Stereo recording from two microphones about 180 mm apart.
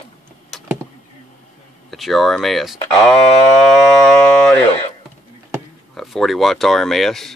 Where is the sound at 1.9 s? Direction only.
Centre (ahead or behind).